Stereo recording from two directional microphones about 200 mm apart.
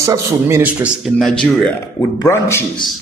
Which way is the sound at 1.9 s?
15° left (ahead or behind).